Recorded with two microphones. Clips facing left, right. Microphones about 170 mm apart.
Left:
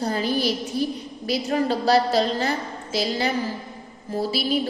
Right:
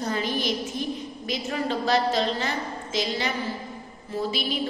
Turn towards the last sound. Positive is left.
turn(degrees=35)  # may be behind; listen again after turning